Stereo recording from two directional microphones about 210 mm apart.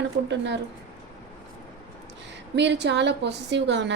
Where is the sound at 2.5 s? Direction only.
55° right (ahead or behind).